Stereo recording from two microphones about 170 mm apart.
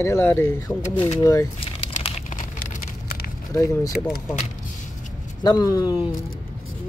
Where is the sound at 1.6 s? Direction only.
35° left (ahead or behind).